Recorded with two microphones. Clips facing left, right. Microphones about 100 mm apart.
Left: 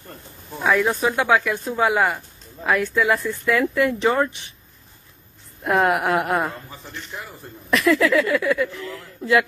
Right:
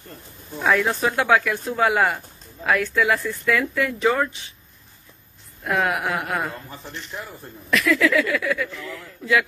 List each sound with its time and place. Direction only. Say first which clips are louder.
0.6 s speech: left 1 dB; 10° left (ahead or behind); by 4.3 s 30° left (ahead or behind)
5.7 s speech: left 4 dB; 35° left (ahead or behind)
7.7 s speech: left 2 dB; 35° left (ahead or behind)